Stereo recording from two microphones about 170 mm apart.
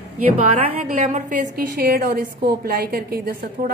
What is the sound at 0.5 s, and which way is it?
A woman's voice, 40° right (ahead or behind).